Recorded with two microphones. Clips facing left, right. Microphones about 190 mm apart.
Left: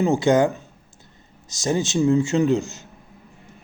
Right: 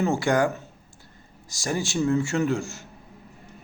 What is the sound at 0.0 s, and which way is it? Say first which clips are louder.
Speech: left 5 dB; 20° left (ahead or behind).